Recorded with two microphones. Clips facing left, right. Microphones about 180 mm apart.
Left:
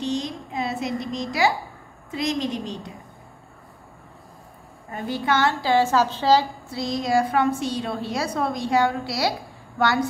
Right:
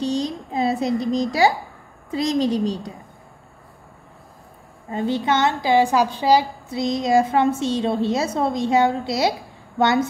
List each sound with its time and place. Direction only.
0.0 s a child's voice: 35° right (ahead or behind)
4.9 s a woman's voice: 20° right (ahead or behind)